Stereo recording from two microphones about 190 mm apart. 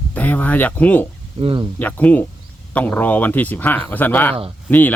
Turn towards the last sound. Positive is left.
turn(degrees=10)  # may be behind; listen again after turning